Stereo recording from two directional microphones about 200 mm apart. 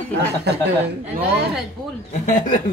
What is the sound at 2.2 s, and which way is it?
Speech, 40° left (ahead or behind).